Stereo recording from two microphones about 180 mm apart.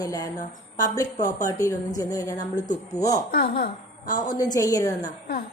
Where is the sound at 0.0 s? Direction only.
20° left (ahead or behind).